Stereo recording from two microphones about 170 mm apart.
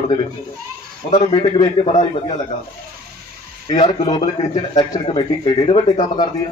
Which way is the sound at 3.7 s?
30° left (ahead or behind).